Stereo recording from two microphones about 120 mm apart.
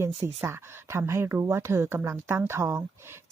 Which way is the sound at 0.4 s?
20° right (ahead or behind).